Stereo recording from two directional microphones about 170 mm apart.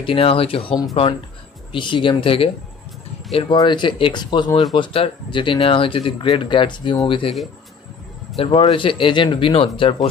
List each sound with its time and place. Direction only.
0.0 s a man's voice: 35° left (ahead or behind)
8.4 s a man's voice: 30° left (ahead or behind)